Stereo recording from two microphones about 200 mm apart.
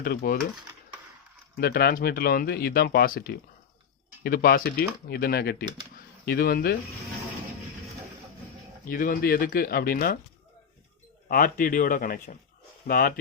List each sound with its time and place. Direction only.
0.0 s speech: 50° left (ahead or behind)
1.5 s speech: 50° left (ahead or behind)
8.9 s speech: 45° left (ahead or behind)
11.3 s speech: 45° left (ahead or behind)